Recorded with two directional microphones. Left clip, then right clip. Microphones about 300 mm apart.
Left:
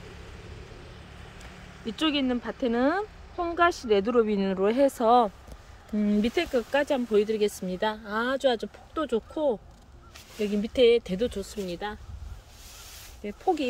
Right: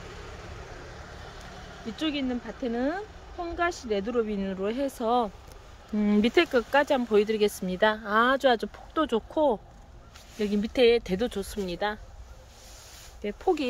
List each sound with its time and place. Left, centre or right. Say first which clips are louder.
0.2 s vehicle: right 4 dB; centre
2.0 s speech: left 4 dB; centre
5.9 s speech: right 3 dB; centre
13.2 s speech: even; centre